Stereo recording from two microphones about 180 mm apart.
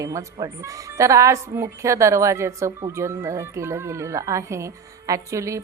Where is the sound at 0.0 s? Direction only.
20° right (ahead or behind).